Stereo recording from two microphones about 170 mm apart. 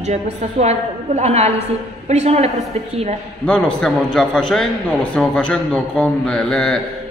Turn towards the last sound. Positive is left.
turn(degrees=5)  # may be behind; listen again after turning